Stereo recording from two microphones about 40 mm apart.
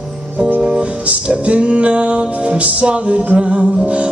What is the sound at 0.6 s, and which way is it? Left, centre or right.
Music, right.